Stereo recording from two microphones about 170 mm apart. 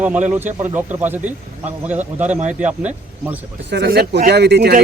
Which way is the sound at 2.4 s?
45° right (ahead or behind).